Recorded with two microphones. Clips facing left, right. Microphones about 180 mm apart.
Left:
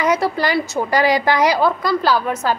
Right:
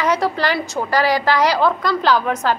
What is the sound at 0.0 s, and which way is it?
A woman's voice, 10° left (ahead or behind).